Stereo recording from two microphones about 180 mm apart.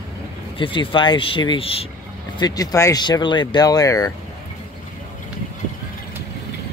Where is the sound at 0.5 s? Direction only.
30° left (ahead or behind).